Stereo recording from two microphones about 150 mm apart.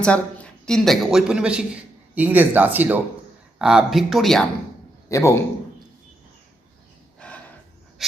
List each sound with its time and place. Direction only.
0.0 s a man's voice: 5° left (ahead or behind)
5.0 s a man's voice: 20° left (ahead or behind)
7.2 s a sound: 5° left (ahead or behind)